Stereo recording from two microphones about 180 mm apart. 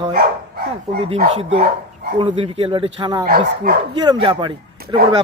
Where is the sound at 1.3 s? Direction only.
40° right (ahead or behind).